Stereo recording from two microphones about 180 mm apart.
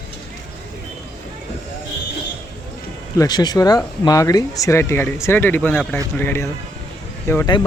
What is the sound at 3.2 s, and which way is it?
Speech, 25° left (ahead or behind).